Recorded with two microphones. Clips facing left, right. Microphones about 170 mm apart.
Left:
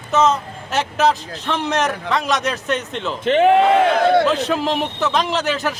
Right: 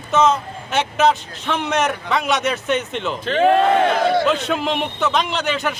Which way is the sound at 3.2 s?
20° left (ahead or behind).